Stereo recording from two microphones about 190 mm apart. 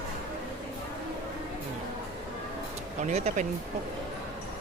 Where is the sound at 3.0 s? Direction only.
35° right (ahead or behind).